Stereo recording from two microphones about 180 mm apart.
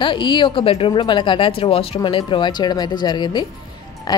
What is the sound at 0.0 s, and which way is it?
A woman's voice, 25° left (ahead or behind).